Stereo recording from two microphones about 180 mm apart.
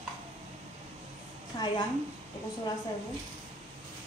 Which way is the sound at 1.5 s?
25° left (ahead or behind).